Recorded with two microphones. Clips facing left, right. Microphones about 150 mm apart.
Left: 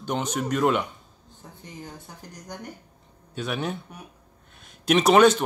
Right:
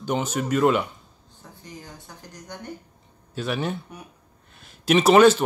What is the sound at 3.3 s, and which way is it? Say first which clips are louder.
Speech: right 2 dB; centre (ahead or behind).